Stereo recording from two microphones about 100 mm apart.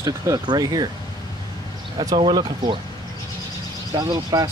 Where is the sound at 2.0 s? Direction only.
40° right (ahead or behind).